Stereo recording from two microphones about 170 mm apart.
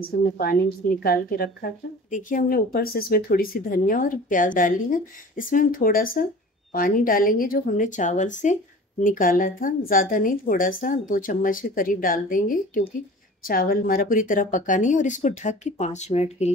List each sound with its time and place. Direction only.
0.4 s a woman's voice: 60° left (ahead or behind); by 16.5 s 40° left (ahead or behind)